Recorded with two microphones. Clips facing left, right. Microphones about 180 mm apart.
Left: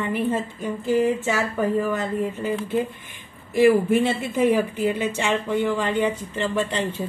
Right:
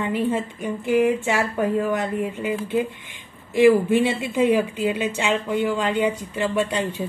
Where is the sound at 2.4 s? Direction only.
15° right (ahead or behind).